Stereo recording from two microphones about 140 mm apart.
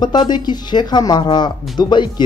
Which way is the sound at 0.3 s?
30° left (ahead or behind).